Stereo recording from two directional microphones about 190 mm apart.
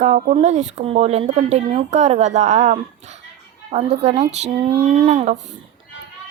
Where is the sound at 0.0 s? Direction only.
40° right (ahead or behind).